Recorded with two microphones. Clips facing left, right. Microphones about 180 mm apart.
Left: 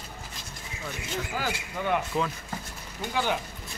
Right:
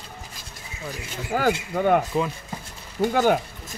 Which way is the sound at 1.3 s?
50° right (ahead or behind).